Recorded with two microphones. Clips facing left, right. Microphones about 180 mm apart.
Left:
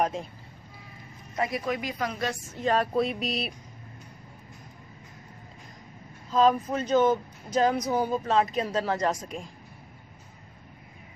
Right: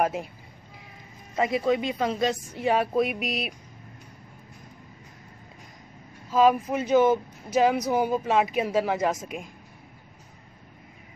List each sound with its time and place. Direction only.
0.0 s speech: 5° right (ahead or behind)
1.3 s speech: 25° right (ahead or behind); by 3.5 s centre (ahead or behind)
6.3 s speech: 10° right (ahead or behind)